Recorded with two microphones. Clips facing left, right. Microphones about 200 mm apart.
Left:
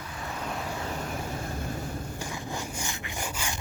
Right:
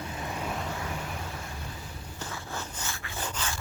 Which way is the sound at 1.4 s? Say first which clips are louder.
Left 7 dB; 50° left (ahead or behind).